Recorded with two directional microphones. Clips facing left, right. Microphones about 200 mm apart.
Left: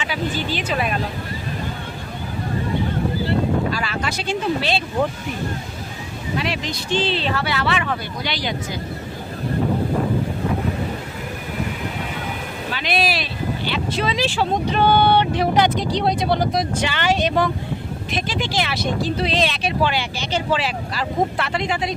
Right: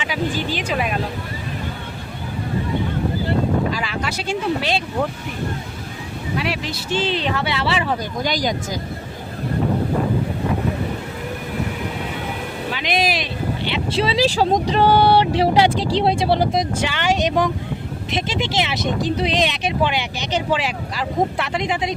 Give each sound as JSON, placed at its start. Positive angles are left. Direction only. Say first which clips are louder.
{"t": 0.0, "sound": "speech", "louder": "right 1 dB", "side_deg": -10}
{"t": 3.7, "sound": "speech", "louder": "even", "side_deg": -15}
{"t": 6.3, "sound": "speech", "louder": "even", "side_deg": -10}
{"t": 8.2, "sound": "speech", "louder": "right 4 dB", "side_deg": -45}
{"t": 12.7, "sound": "speech", "louder": "even", "side_deg": -15}
{"t": 16.7, "sound": "speech", "louder": "even", "side_deg": -10}